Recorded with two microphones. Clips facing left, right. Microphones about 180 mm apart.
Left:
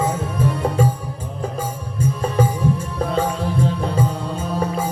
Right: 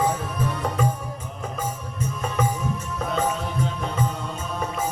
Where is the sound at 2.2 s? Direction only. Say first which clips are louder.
Left 6 dB; 30° left (ahead or behind).